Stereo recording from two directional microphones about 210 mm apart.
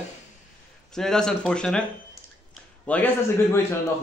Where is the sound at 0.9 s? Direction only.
5° left (ahead or behind).